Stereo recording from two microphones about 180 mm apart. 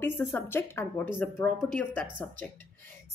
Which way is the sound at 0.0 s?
10° left (ahead or behind).